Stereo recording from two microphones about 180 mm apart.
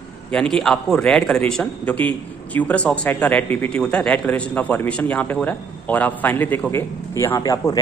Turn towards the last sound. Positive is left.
turn(degrees=20)  # may be behind; listen again after turning